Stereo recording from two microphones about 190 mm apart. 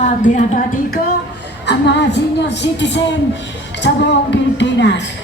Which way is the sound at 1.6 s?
65° left (ahead or behind).